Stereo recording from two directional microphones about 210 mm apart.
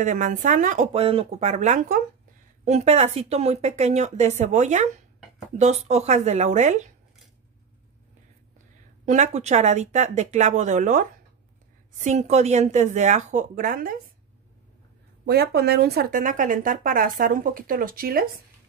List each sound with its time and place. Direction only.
0.0 s speech: 35° right (ahead or behind)
9.0 s speech: 35° right (ahead or behind)
15.2 s speech: 50° right (ahead or behind)